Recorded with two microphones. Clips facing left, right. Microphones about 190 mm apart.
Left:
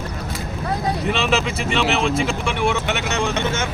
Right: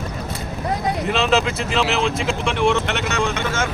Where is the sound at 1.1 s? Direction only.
Centre (ahead or behind).